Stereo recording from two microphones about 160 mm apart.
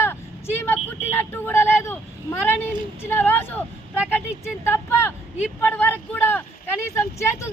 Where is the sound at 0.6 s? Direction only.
10° left (ahead or behind).